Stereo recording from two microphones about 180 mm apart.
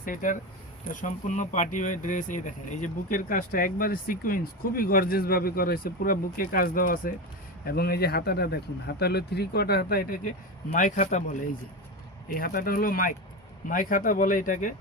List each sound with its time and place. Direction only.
0.0 s speech: 50° left (ahead or behind)
12.3 s speech: 50° left (ahead or behind)